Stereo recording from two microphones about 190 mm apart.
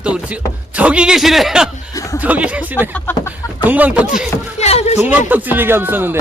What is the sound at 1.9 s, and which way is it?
Music, 15° left (ahead or behind).